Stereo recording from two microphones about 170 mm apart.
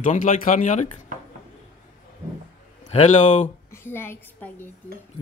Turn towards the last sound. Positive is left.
turn(degrees=15)  # may be behind; listen again after turning